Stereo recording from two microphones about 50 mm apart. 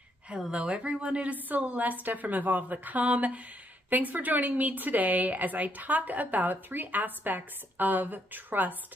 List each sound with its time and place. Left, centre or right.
0.3 s a woman's voice: centre; by 8.7 s right